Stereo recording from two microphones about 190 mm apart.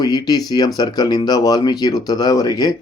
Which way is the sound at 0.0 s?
20° left (ahead or behind).